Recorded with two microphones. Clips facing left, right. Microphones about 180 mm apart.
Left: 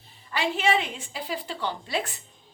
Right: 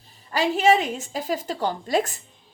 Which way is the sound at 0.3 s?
40° right (ahead or behind).